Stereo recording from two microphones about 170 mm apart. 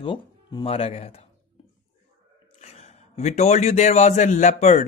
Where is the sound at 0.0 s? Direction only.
30° left (ahead or behind).